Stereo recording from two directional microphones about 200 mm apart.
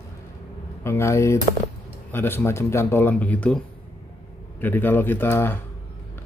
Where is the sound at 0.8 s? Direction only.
15° left (ahead or behind).